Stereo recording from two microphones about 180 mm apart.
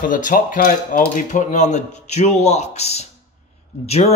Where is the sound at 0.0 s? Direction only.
50° left (ahead or behind).